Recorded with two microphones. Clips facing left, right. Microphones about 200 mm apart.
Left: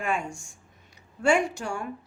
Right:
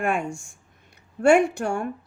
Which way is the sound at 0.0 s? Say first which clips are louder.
Right 4 dB; 55° right (ahead or behind).